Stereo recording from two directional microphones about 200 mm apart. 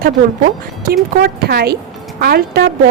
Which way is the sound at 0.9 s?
50° right (ahead or behind).